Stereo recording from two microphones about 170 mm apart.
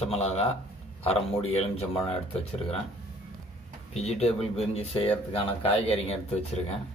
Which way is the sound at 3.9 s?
40° left (ahead or behind).